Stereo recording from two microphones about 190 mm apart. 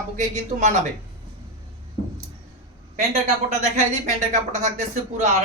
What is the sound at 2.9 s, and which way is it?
Speech, 40° right (ahead or behind).